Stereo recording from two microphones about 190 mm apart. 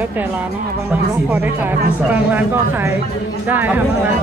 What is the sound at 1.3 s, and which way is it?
Speech, 10° right (ahead or behind).